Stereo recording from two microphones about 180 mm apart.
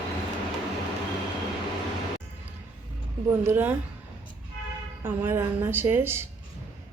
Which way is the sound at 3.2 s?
10° right (ahead or behind).